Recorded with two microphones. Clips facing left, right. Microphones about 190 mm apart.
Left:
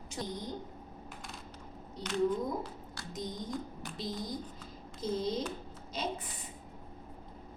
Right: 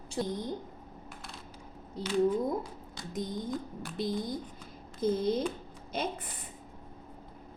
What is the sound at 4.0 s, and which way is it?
Speech, 55° right (ahead or behind).